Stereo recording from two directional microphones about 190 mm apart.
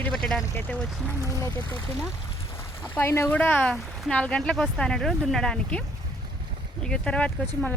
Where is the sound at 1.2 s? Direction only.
15° left (ahead or behind).